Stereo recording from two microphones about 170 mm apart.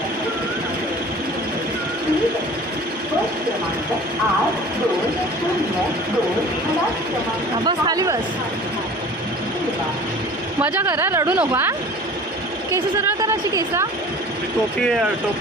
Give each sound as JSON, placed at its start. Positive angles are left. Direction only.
{"t": 7.6, "sound": "speech", "side_deg": -25}
{"t": 10.6, "sound": "a woman's voice", "side_deg": -15}
{"t": 13.2, "sound": "a woman's voice", "side_deg": -20}
{"t": 14.8, "sound": "speech", "side_deg": 5}